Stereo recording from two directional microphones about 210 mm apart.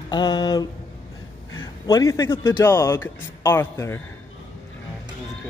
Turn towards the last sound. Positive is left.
turn(degrees=10)  # may be behind; listen again after turning